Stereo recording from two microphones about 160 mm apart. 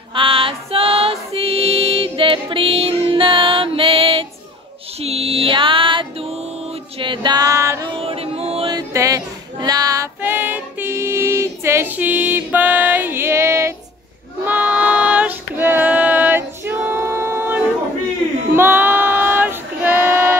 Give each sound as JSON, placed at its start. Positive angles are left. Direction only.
{"t": 0.1, "sound": "music", "side_deg": -35}
{"t": 8.0, "sound": "music", "side_deg": -40}
{"t": 8.6, "sound": "female singing", "side_deg": -20}
{"t": 14.4, "sound": "child singing", "side_deg": -10}